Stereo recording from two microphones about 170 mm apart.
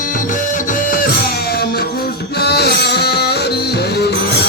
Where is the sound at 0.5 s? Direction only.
50° left (ahead or behind).